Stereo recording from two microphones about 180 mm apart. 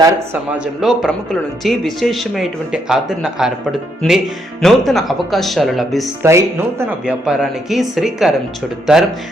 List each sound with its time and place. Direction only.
0.6 s speech: centre (ahead or behind)
6.2 s speech: 15° right (ahead or behind)
7.0 s speech: 5° right (ahead or behind)